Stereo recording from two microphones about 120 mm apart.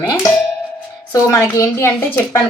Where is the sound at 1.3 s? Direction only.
25° left (ahead or behind).